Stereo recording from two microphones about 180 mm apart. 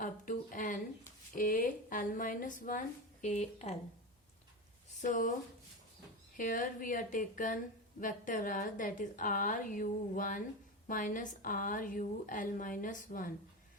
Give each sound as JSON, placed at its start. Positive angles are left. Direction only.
{"t": 0.0, "sound": "a sound", "side_deg": 50}
{"t": 1.4, "sound": "a woman's voice", "side_deg": 50}
{"t": 4.9, "sound": "a woman's voice", "side_deg": 45}
{"t": 6.3, "sound": "a woman's voice", "side_deg": 50}